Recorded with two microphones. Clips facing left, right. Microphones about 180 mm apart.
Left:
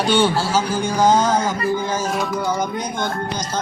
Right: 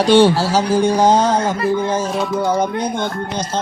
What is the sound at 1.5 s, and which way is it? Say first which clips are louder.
Music: right 4 dB; 65° right (ahead or behind).